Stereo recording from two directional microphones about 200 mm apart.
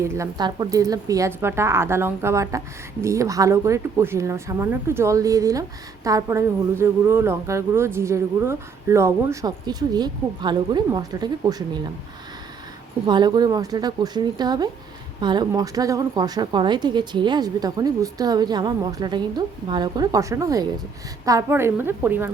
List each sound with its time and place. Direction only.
0.0 s a woman's voice: 15° right (ahead or behind)
13.1 s a woman's voice: 20° right (ahead or behind)